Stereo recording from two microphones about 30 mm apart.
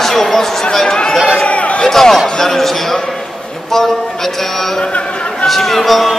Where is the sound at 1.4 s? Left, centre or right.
Left.